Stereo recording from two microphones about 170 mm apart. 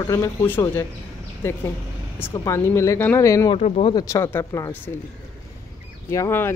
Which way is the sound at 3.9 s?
15° left (ahead or behind).